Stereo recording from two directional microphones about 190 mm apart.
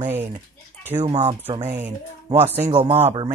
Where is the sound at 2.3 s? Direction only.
35° right (ahead or behind).